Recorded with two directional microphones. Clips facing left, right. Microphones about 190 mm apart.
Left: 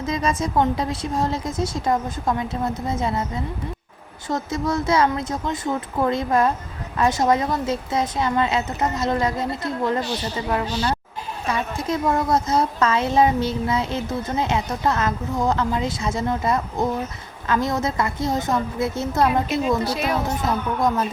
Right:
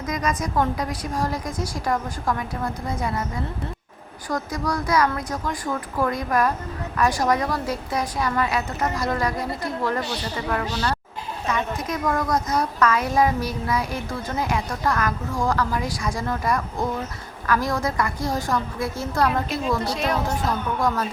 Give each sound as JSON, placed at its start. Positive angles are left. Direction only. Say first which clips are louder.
{"t": 0.0, "sound": "a woman's voice", "louder": "left 3 dB", "side_deg": 25}
{"t": 19.3, "sound": "a woman's voice", "louder": "left 3 dB", "side_deg": 5}
{"t": 20.2, "sound": "a woman's voice", "louder": "left 1 dB", "side_deg": 20}